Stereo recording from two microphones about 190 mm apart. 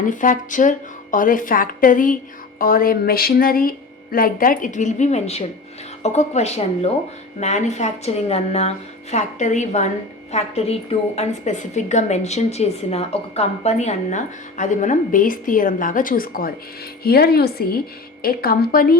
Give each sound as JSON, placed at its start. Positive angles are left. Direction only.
{"t": 0.0, "sound": "a woman's voice", "side_deg": 45}